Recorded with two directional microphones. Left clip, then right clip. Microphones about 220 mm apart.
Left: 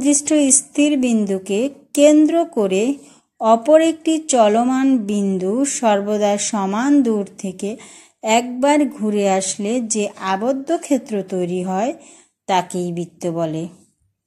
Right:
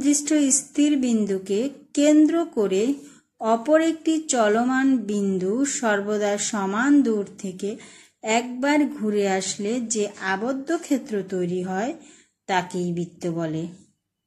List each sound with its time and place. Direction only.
0.0 s a woman's voice: 25° left (ahead or behind)